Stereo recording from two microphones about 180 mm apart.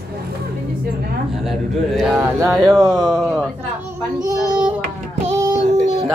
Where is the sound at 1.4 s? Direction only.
Centre (ahead or behind).